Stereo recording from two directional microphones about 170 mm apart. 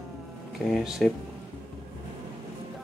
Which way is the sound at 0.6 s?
Centre (ahead or behind).